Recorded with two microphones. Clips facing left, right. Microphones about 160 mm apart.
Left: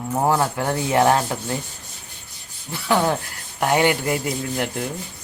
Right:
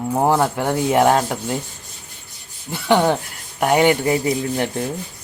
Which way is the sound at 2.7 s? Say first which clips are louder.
Right 4 dB; 20° right (ahead or behind).